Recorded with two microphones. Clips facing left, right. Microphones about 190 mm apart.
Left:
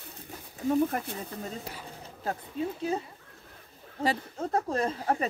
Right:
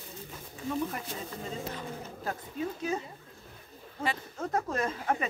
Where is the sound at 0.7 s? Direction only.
55° left (ahead or behind).